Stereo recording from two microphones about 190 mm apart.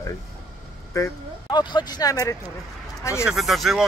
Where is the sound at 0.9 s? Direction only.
20° left (ahead or behind).